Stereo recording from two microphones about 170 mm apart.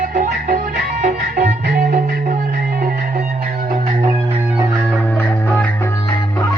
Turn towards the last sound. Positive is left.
turn(degrees=10)  # may be behind; listen again after turning